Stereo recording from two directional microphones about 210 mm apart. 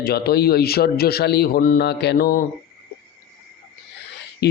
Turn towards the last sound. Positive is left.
turn(degrees=50)  # may be behind; listen again after turning